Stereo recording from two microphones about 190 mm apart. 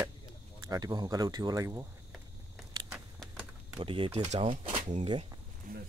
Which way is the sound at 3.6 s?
25° right (ahead or behind).